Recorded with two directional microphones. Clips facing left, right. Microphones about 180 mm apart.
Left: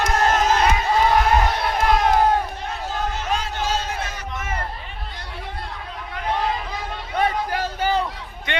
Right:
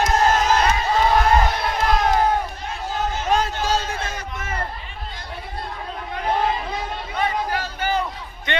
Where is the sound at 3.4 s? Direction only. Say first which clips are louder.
Right 3 dB; 35° right (ahead or behind).